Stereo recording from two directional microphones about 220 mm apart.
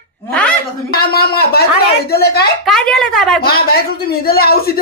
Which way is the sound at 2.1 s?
45° left (ahead or behind).